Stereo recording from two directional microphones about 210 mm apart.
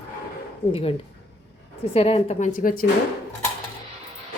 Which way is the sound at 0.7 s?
25° left (ahead or behind).